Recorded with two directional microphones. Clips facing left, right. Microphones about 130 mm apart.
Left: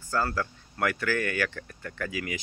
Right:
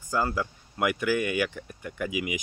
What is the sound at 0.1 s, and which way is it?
Speech, 15° right (ahead or behind).